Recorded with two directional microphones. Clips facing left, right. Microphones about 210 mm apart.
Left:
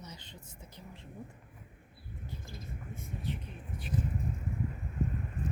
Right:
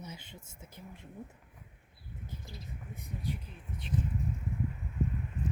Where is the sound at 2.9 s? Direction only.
15° right (ahead or behind).